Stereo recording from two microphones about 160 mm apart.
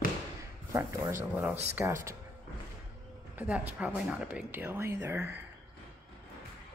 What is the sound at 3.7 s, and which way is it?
Speech, 10° right (ahead or behind).